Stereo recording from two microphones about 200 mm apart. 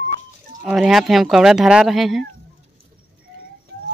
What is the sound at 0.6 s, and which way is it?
Speech, centre (ahead or behind).